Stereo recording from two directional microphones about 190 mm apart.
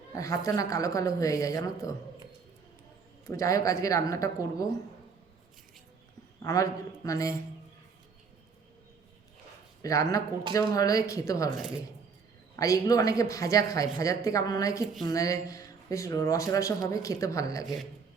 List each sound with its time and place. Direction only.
0.2 s speech: 15° left (ahead or behind)
3.2 s speech: 15° left (ahead or behind)
6.4 s speech: 20° left (ahead or behind)
9.8 s speech: 15° left (ahead or behind)
12.5 s speech: 20° left (ahead or behind)